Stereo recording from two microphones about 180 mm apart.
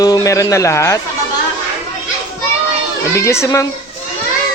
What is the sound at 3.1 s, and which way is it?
Speech, 15° left (ahead or behind).